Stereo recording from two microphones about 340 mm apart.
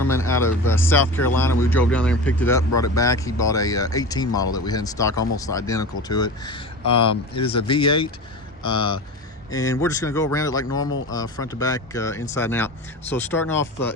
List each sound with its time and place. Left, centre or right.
0.0 s a man's voice: centre
4.3 s speech: left
4.5 s speech: centre
10.8 s speech: left
11.1 s speech: centre